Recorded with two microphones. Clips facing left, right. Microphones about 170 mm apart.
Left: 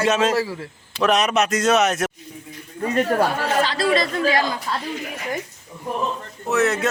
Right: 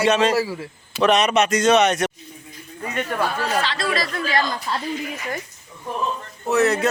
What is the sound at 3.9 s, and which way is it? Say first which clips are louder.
Speech: left 5 dB; 25° left (ahead or behind).